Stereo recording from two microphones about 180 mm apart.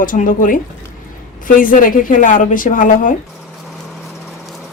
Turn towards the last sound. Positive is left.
turn(degrees=50)  # may be behind; listen again after turning